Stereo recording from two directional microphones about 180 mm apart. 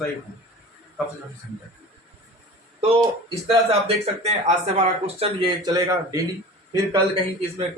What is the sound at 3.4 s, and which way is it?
Speech, 30° right (ahead or behind).